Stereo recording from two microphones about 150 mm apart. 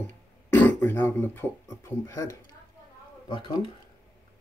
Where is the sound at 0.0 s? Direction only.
15° left (ahead or behind).